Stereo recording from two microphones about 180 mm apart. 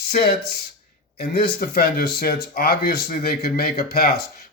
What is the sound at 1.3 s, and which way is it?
Speech, 55° left (ahead or behind).